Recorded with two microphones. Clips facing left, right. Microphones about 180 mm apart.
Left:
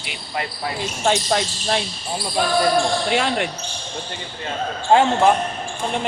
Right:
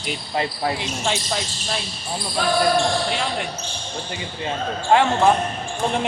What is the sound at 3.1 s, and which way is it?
Speech, 70° left (ahead or behind).